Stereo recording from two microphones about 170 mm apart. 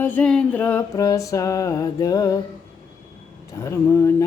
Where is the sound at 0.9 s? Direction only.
20° left (ahead or behind).